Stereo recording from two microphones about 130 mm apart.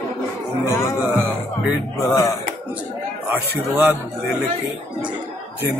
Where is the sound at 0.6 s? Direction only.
25° left (ahead or behind).